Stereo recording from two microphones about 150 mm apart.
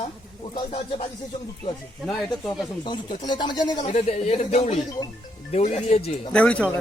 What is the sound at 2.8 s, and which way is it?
Speech, 30° left (ahead or behind).